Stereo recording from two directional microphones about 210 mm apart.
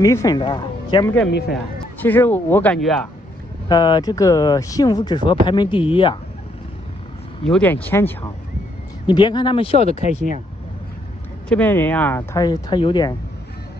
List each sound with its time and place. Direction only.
0.0 s speech: 15° left (ahead or behind)
2.0 s speech: 10° left (ahead or behind)
3.6 s speech: 20° left (ahead or behind)
7.4 s speech: 5° left (ahead or behind)
9.0 s speech: 20° left (ahead or behind)
11.4 s speech: 5° left (ahead or behind)